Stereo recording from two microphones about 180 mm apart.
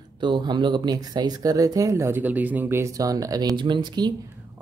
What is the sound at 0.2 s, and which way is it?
Speech, 25° right (ahead or behind).